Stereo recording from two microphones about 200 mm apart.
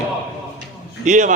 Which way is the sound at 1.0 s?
40° right (ahead or behind).